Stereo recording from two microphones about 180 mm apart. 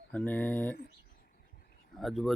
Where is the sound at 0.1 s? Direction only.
10° left (ahead or behind).